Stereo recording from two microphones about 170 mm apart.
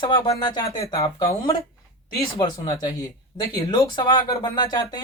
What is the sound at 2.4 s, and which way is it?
Speech, 25° left (ahead or behind).